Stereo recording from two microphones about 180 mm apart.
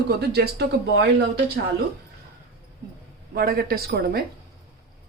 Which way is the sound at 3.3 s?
60° right (ahead or behind).